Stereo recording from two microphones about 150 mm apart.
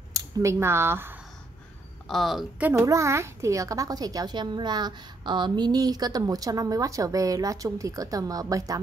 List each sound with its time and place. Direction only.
0.1 s speech: 20° right (ahead or behind)
2.0 s a woman's voice: centre (ahead or behind)
2.6 s a woman's voice: 20° right (ahead or behind)